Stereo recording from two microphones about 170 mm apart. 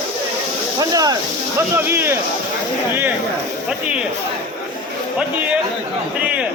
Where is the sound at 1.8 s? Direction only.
15° right (ahead or behind).